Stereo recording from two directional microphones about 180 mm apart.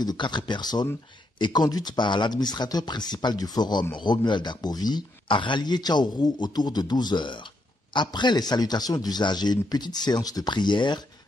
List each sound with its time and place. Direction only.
0.0 s speech: 25° left (ahead or behind)